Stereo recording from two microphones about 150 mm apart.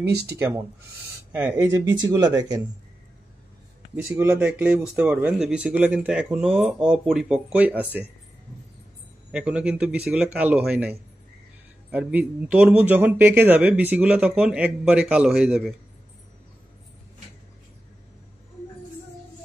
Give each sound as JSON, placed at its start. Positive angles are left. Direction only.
{"t": 0.4, "sound": "speech", "side_deg": -20}
{"t": 3.9, "sound": "a man's voice", "side_deg": -15}
{"t": 9.3, "sound": "a man's voice", "side_deg": -10}